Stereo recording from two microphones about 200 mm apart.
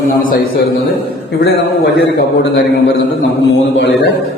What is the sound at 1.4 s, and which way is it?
A man's voice, 55° left (ahead or behind).